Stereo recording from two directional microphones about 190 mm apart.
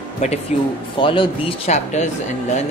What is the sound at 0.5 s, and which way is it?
Speech, 35° left (ahead or behind).